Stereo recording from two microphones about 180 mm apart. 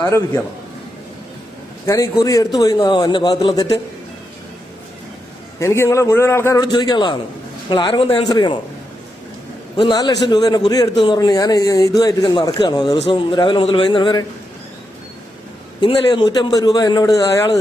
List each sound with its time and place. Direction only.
1.9 s a man's voice: 20° left (ahead or behind)
5.5 s a man's voice: 15° left (ahead or behind)
9.7 s a man's voice: 20° left (ahead or behind)
15.8 s a man's voice: 25° left (ahead or behind)